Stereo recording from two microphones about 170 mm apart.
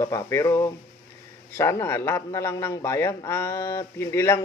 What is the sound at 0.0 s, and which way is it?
A man's voice, 15° left (ahead or behind).